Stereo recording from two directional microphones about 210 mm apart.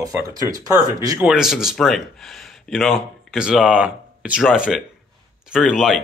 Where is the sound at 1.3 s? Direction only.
Centre (ahead or behind).